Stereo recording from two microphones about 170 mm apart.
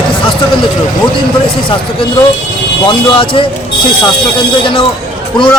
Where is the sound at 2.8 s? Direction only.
30° left (ahead or behind).